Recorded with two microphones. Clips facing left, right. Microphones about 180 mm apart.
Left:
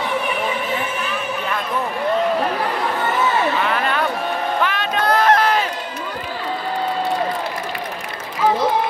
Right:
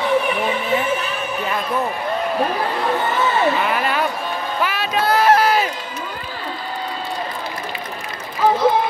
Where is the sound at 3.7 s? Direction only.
10° right (ahead or behind).